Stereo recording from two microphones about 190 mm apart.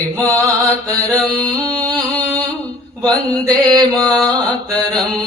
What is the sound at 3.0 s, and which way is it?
Mantra, 20° right (ahead or behind).